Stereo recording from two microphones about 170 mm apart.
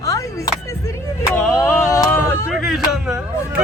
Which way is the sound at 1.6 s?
20° left (ahead or behind).